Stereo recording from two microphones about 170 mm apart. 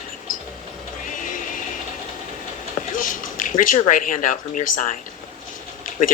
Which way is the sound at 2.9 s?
50° left (ahead or behind).